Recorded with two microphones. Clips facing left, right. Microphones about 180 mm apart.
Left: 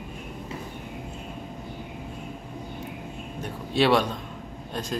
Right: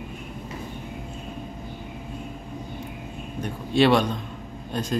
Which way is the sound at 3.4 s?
Centre (ahead or behind).